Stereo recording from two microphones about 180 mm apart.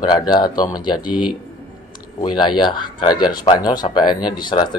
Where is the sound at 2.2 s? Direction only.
25° left (ahead or behind).